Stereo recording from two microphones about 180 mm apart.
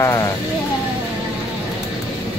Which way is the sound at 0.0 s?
15° left (ahead or behind).